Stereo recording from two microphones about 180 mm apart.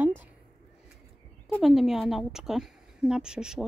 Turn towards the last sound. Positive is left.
turn(degrees=-5)  # may be behind; listen again after turning